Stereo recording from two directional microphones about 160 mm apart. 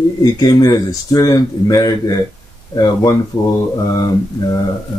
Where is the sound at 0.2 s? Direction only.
25° left (ahead or behind).